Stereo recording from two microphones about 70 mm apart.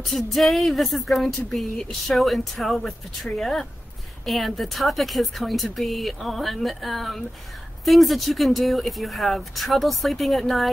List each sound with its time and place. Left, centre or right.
0.0 s music: centre